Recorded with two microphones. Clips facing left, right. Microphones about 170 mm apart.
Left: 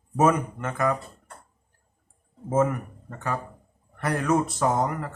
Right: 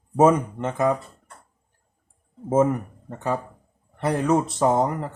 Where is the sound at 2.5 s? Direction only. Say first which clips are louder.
Right 3 dB; 25° right (ahead or behind).